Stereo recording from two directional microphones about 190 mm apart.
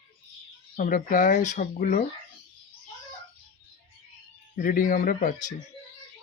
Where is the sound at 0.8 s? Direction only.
45° left (ahead or behind).